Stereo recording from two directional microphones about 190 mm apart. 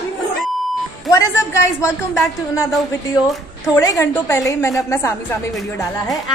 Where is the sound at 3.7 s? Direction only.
20° left (ahead or behind).